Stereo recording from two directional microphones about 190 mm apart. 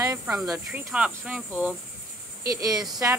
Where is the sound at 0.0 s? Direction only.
15° right (ahead or behind).